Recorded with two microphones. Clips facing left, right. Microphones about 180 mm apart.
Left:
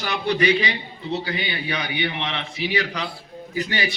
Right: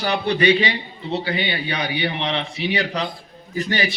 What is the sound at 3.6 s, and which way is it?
Speech, 45° right (ahead or behind).